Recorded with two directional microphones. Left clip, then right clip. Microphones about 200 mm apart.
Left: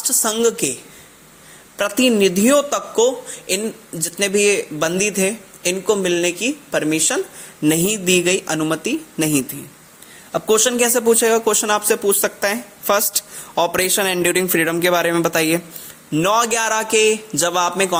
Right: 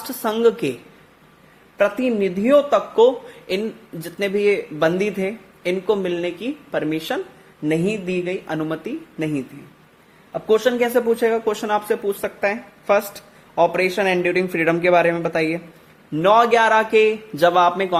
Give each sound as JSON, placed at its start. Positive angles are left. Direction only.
{"t": 0.1, "sound": "a man's voice", "side_deg": 10}
{"t": 1.8, "sound": "speech", "side_deg": 25}
{"t": 2.9, "sound": "a man's voice", "side_deg": 5}
{"t": 7.6, "sound": "speech", "side_deg": 25}
{"t": 10.3, "sound": "speech", "side_deg": 25}
{"t": 14.5, "sound": "speech", "side_deg": 15}